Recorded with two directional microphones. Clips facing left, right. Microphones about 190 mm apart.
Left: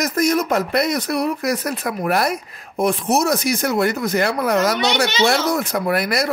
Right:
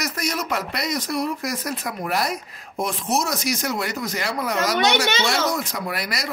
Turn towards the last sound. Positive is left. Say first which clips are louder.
# left 9 dB
turn(degrees=55)  # may be behind; listen again after turning